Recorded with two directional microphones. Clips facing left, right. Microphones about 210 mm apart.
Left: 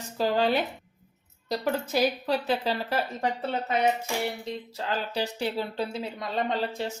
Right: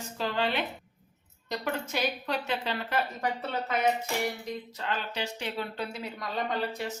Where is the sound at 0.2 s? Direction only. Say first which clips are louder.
Left 6 dB; 40° left (ahead or behind).